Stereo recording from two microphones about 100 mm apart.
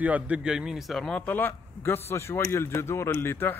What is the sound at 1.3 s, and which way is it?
A man's voice, 20° left (ahead or behind).